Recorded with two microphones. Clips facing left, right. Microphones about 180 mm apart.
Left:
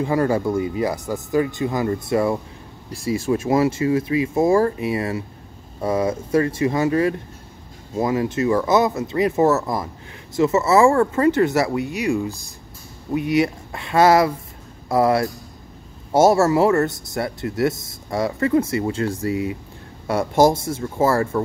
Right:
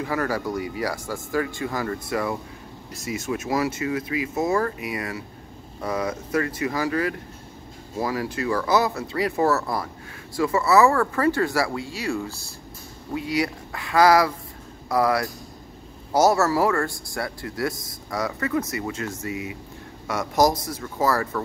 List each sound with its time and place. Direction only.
0.0 s speech: 25° left (ahead or behind)